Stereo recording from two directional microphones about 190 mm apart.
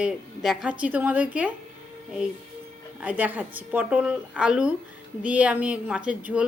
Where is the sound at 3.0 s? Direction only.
10° right (ahead or behind).